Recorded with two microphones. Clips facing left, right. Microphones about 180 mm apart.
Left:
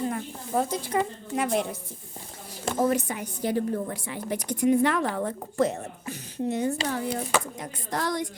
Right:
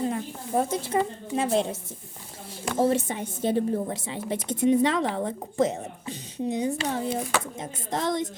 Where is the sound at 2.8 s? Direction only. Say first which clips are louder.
Right 2 dB; 25° right (ahead or behind).